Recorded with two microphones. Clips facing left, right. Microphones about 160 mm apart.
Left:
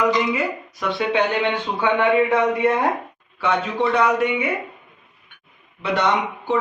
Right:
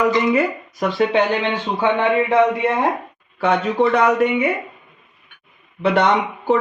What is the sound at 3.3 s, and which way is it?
Speech, 50° right (ahead or behind).